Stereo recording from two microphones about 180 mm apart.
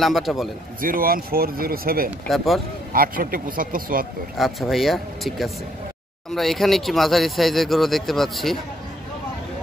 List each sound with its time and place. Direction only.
0.0 s speech: centre (ahead or behind)
0.7 s speech: 50° right (ahead or behind)
2.2 s speech: centre (ahead or behind)
2.9 s speech: 50° right (ahead or behind)
4.4 s speech: centre (ahead or behind)